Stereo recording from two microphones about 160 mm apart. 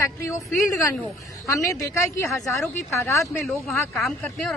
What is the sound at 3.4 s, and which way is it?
Speech, centre (ahead or behind).